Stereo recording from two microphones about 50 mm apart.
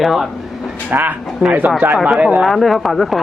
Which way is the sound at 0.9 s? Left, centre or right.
Right.